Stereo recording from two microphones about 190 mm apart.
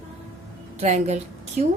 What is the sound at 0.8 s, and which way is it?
Speech, 35° right (ahead or behind).